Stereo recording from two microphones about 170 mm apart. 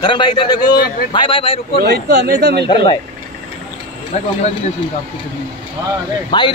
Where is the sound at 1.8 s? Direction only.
75° right (ahead or behind).